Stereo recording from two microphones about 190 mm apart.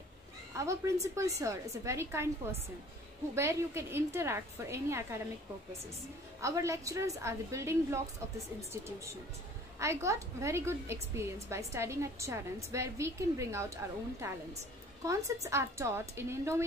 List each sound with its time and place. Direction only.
0.6 s a woman's voice: 15° right (ahead or behind)
3.3 s a woman's voice: 15° right (ahead or behind)
6.4 s a woman's voice: 15° right (ahead or behind)
9.8 s a woman's voice: 15° right (ahead or behind)